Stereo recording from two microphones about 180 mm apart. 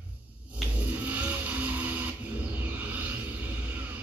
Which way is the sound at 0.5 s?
10° right (ahead or behind).